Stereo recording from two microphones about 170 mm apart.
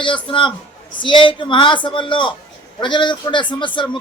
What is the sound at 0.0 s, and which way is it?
A man's voice, 30° left (ahead or behind).